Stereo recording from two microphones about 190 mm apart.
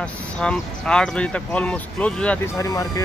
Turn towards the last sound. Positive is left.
turn(degrees=20)  # may be behind; listen again after turning